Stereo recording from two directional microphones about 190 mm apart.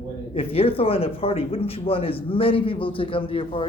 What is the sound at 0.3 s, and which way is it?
A man's voice, 30° left (ahead or behind).